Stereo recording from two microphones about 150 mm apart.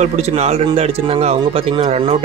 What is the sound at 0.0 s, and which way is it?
Speech, 45° right (ahead or behind).